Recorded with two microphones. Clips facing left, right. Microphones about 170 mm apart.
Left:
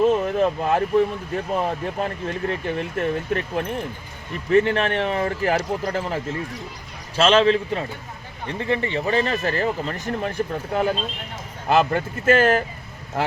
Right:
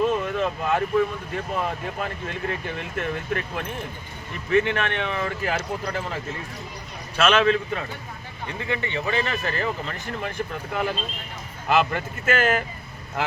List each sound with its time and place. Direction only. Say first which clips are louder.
0.0 s a sound: left 5 dB; 40° left (ahead or behind)
1.5 s speech: left 4 dB; 35° left (ahead or behind)
7.2 s a man's voice: left 3 dB; 30° left (ahead or behind)